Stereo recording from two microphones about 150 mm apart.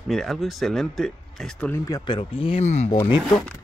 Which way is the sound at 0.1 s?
Centre (ahead or behind).